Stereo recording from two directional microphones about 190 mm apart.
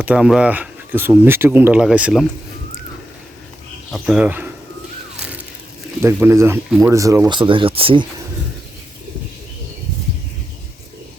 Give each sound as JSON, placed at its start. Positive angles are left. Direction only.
{"t": 0.0, "sound": "speech", "side_deg": -5}
{"t": 3.9, "sound": "speech", "side_deg": -5}
{"t": 6.0, "sound": "speech", "side_deg": -10}
{"t": 6.7, "sound": "speech", "side_deg": 0}
{"t": 6.9, "sound": "speech", "side_deg": -15}